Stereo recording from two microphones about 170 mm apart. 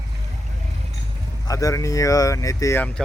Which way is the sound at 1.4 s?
20° left (ahead or behind).